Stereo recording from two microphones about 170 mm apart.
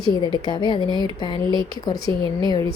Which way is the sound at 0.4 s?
25° left (ahead or behind).